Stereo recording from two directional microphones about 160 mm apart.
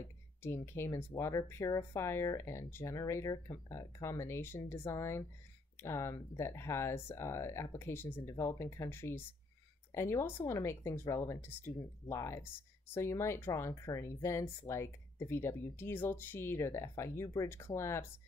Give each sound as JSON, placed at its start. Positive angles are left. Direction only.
{"t": 0.4, "sound": "speech", "side_deg": 15}